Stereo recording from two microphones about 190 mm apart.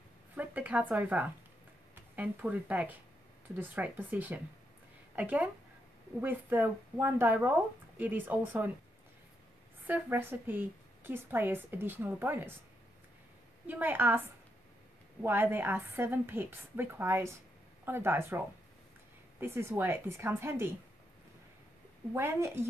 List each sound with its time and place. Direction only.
0.4 s speech: 5° right (ahead or behind)
9.8 s speech: 10° right (ahead or behind)
13.7 s speech: 10° right (ahead or behind)
15.2 s speech: 10° right (ahead or behind)
19.4 s speech: 10° right (ahead or behind)
22.1 s speech: 15° right (ahead or behind)